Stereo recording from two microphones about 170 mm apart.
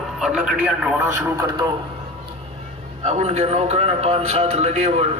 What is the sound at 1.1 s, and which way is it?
Speech, 20° right (ahead or behind).